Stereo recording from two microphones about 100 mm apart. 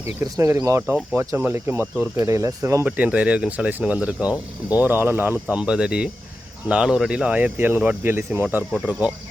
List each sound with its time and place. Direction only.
0.0 s speech: 30° right (ahead or behind)
2.8 s speech: 15° right (ahead or behind)
8.7 s speech: 5° right (ahead or behind)